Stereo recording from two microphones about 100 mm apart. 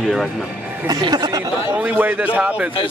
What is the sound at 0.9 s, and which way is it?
Speech, 45° right (ahead or behind).